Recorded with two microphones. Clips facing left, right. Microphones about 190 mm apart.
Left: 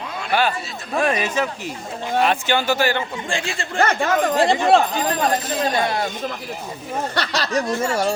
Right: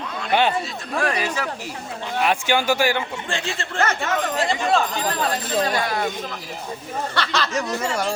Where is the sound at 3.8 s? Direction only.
35° left (ahead or behind).